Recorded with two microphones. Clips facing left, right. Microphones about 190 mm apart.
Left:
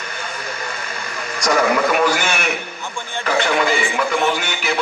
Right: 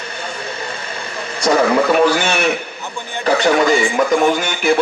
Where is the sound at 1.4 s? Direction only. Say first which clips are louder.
Right 3 dB; 30° right (ahead or behind).